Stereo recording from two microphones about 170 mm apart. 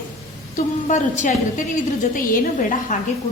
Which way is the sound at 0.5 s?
45° left (ahead or behind).